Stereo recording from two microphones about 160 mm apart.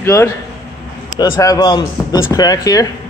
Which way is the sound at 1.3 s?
20° left (ahead or behind).